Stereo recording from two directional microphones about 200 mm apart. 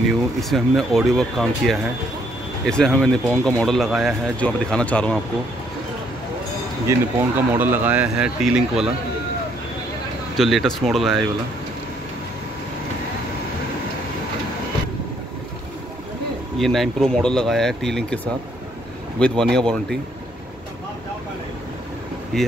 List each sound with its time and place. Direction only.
0.4 s speech: centre (ahead or behind)
6.9 s speech: 10° right (ahead or behind)
10.3 s speech: centre (ahead or behind)
16.5 s speech: centre (ahead or behind)